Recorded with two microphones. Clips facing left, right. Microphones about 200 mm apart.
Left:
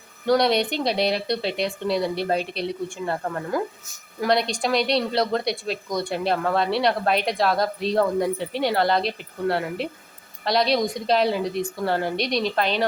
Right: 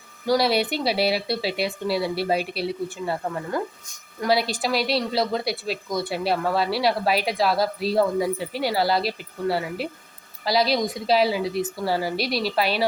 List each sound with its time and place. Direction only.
0.3 s speech: 5° right (ahead or behind)